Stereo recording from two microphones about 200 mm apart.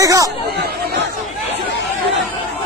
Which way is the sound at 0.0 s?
15° right (ahead or behind).